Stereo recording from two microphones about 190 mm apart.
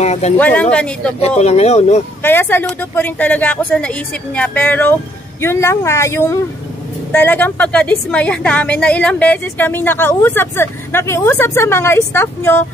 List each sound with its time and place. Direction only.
0.0 s a sound: 35° left (ahead or behind)
0.4 s a woman's voice: 10° left (ahead or behind)
1.2 s speech: 35° left (ahead or behind)
2.2 s a woman's voice: 10° left (ahead or behind)